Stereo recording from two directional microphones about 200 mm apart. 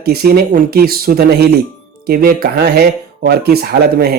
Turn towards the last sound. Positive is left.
turn(degrees=-50)  # may be behind; listen again after turning